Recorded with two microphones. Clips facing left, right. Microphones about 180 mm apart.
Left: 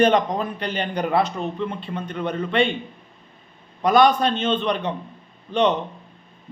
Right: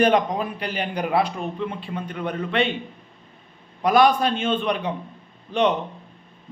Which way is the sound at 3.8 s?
5° right (ahead or behind).